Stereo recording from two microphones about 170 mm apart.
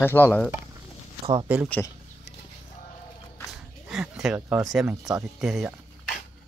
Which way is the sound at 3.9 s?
Centre (ahead or behind).